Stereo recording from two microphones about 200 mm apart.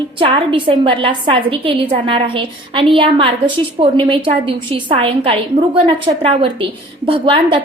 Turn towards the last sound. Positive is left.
turn(degrees=-25)  # may be behind; listen again after turning